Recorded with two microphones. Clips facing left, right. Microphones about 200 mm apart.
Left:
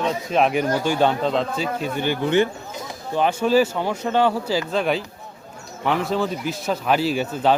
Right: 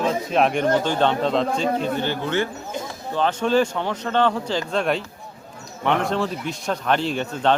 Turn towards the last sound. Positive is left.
turn(degrees=5)  # may be behind; listen again after turning